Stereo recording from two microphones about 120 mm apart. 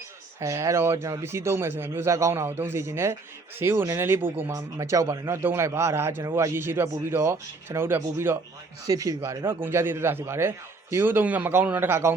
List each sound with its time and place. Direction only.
0.3 s speech: 25° right (ahead or behind)